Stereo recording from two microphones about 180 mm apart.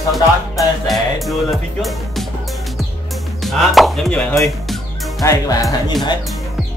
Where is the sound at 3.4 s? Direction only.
Centre (ahead or behind).